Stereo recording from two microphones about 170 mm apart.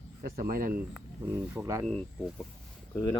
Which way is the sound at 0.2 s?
60° right (ahead or behind).